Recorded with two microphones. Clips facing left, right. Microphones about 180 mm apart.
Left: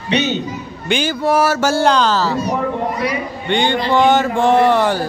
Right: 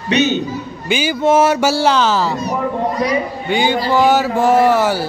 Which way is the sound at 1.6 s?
5° right (ahead or behind).